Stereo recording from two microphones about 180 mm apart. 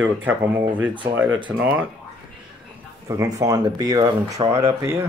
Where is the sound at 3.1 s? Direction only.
15° right (ahead or behind).